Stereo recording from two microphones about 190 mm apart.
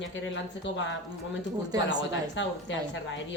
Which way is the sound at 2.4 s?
70° left (ahead or behind).